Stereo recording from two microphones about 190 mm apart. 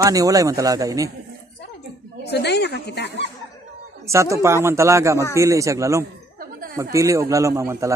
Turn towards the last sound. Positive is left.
turn(degrees=-15)  # may be behind; listen again after turning